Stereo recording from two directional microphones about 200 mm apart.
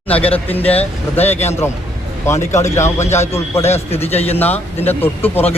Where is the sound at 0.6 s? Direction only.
30° left (ahead or behind).